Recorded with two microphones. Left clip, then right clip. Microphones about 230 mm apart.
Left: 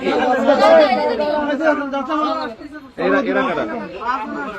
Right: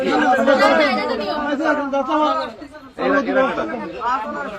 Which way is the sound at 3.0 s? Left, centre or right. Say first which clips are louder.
Even; left.